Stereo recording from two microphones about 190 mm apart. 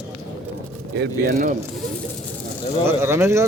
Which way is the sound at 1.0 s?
50° right (ahead or behind).